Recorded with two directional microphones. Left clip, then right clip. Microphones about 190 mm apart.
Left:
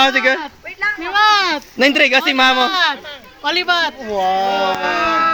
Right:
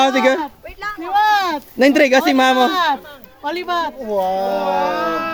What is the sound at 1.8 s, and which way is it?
Speech, 25° right (ahead or behind).